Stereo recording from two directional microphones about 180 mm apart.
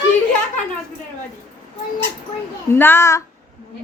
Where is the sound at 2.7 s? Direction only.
10° left (ahead or behind).